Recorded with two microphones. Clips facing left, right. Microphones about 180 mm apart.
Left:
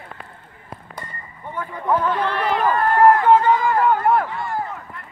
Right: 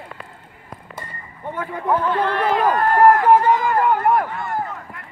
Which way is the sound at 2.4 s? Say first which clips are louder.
Right 1 dB; 45° right (ahead or behind).